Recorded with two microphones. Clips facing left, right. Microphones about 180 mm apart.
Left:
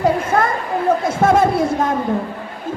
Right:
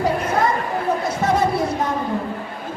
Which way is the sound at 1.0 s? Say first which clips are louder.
Left 5 dB; 50° left (ahead or behind).